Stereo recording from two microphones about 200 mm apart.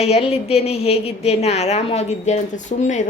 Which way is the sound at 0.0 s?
30° left (ahead or behind).